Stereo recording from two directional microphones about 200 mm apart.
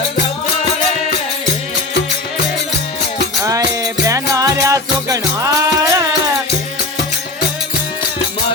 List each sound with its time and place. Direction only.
4.0 s music: 15° right (ahead or behind)